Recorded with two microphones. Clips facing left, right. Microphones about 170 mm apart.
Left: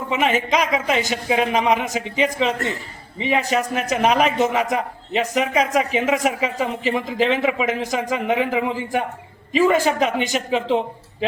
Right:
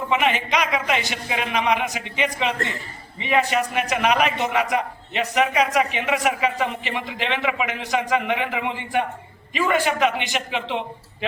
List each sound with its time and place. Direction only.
0.2 s a man's voice: 40° left (ahead or behind)